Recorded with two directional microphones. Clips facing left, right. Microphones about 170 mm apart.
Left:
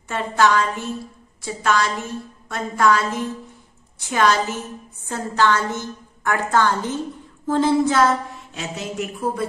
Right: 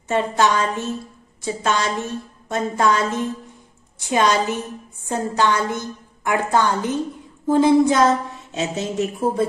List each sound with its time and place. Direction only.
0.1 s a woman's voice: 20° right (ahead or behind)